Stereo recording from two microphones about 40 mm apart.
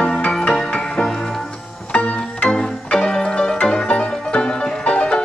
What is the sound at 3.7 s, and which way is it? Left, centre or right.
Music, left.